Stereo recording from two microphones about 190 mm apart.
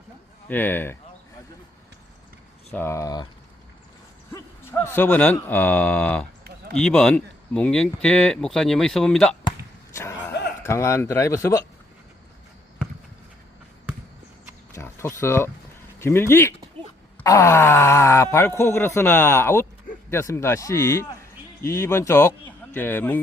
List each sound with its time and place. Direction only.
0.4 s speech: 10° left (ahead or behind)
2.7 s speech: 15° left (ahead or behind)
4.3 s speech: 15° left (ahead or behind)
9.9 s a sound: 15° left (ahead or behind)
10.6 s speech: 15° left (ahead or behind)
14.8 s a sound: 15° left (ahead or behind)
16.0 s a man's voice: 15° left (ahead or behind)